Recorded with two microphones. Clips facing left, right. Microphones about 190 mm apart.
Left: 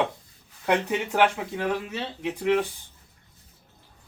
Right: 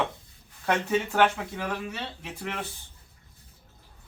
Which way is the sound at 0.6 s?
15° left (ahead or behind).